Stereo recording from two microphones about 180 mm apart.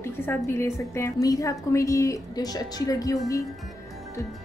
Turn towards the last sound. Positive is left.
turn(degrees=20)  # may be behind; listen again after turning